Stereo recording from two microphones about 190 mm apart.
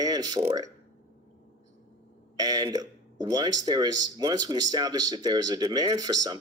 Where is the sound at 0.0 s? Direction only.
20° right (ahead or behind).